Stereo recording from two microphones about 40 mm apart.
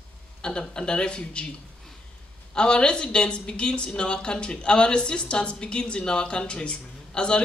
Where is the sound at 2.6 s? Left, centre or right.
Left.